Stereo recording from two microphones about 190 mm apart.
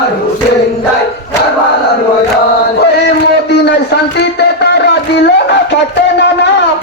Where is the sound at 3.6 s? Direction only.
60° left (ahead or behind).